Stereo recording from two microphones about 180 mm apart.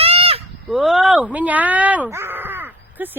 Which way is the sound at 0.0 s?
35° right (ahead or behind).